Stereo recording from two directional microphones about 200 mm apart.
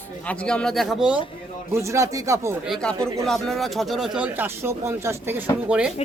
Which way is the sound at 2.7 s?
5° left (ahead or behind).